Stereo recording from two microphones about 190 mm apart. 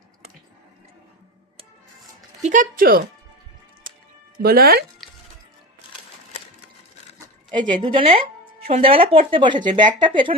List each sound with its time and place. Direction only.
2.4 s speech: 40° right (ahead or behind)
4.4 s speech: 55° right (ahead or behind)
5.0 s music: centre (ahead or behind)
7.7 s speech: 25° right (ahead or behind)